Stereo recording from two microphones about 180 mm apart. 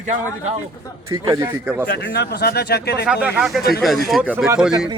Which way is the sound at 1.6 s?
10° right (ahead or behind).